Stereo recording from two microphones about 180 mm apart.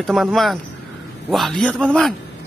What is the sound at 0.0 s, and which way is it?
Speech, centre (ahead or behind).